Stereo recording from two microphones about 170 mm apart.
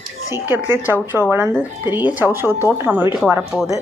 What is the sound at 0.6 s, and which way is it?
Speech, 10° right (ahead or behind).